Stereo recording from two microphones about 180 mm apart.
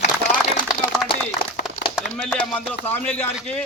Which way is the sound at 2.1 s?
Centre (ahead or behind).